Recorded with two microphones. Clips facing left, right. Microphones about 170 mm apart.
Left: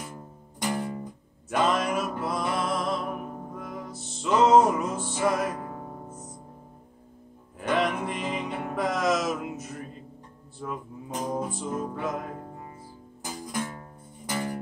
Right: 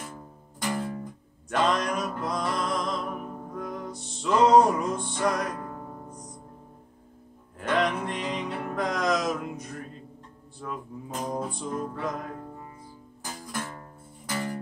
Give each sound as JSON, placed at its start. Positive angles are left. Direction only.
{"t": 0.0, "sound": "music", "side_deg": 15}
{"t": 7.6, "sound": "music", "side_deg": 5}
{"t": 13.2, "sound": "music", "side_deg": 15}